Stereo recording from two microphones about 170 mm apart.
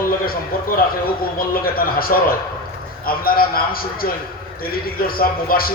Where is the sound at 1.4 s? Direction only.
60° left (ahead or behind).